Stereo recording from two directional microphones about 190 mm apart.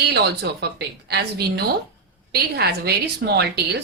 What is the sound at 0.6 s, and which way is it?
A woman's voice, 60° right (ahead or behind).